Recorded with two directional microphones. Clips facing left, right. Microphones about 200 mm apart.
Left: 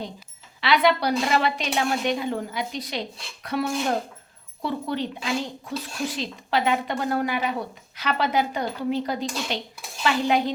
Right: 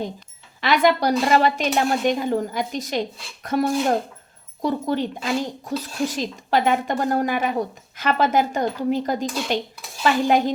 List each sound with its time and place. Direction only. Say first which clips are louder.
0.6 s speech: right 2 dB; 45° right (ahead or behind)